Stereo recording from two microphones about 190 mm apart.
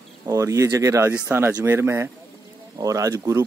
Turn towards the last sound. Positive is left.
turn(degrees=-15)  # may be behind; listen again after turning